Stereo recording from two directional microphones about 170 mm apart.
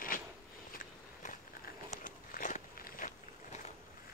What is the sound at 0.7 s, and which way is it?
Biting, 50° left (ahead or behind).